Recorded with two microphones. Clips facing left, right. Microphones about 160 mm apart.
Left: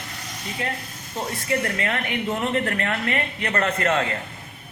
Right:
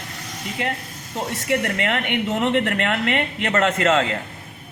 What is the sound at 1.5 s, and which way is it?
A woman's voice, 75° right (ahead or behind).